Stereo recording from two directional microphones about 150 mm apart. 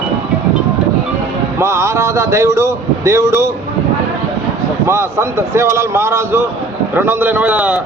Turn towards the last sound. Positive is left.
turn(degrees=-10)  # may be behind; listen again after turning